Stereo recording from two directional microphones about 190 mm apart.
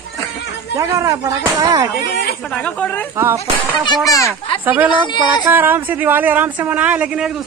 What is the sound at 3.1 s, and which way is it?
Speech, 15° right (ahead or behind).